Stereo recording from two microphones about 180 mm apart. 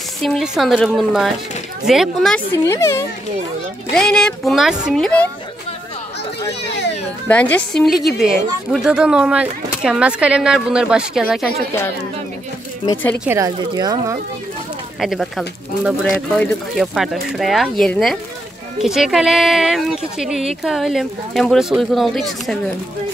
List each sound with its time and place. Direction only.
0.2 s speech: centre (ahead or behind)
2.5 s speech: 15° left (ahead or behind)
3.9 s speech: 5° left (ahead or behind)
6.6 s speech: 75° left (ahead or behind)
7.2 s speech: 10° left (ahead or behind)
13.2 s speech: 15° right (ahead or behind)
15.0 s speech: centre (ahead or behind)